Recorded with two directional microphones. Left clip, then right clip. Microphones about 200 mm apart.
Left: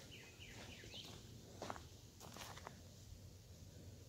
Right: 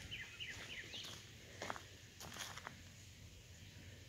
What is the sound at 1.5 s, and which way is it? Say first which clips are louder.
Walk: right 3 dB; 5° right (ahead or behind).